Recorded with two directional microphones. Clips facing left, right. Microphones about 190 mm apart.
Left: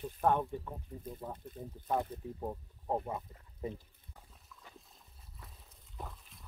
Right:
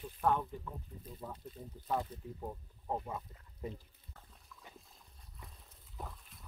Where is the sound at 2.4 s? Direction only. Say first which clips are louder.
Left 3 dB; 20° left (ahead or behind).